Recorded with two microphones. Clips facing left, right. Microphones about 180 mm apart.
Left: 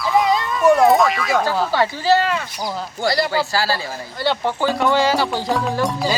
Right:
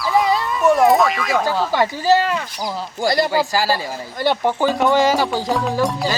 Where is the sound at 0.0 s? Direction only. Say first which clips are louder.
Even; centre (ahead or behind).